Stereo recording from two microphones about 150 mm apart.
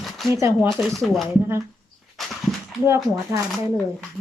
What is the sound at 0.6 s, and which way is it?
Speech, centre (ahead or behind).